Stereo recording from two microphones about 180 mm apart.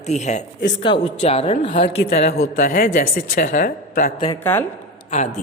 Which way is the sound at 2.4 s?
45° left (ahead or behind).